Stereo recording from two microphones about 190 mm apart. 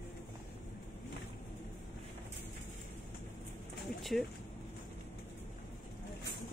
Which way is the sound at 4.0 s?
Centre (ahead or behind).